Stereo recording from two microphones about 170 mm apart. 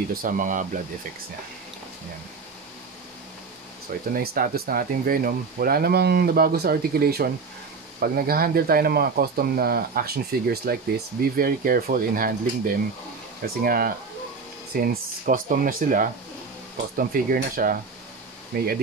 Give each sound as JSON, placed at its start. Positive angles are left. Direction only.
{"t": 0.1, "sound": "speech", "side_deg": -55}
{"t": 4.1, "sound": "speech", "side_deg": -60}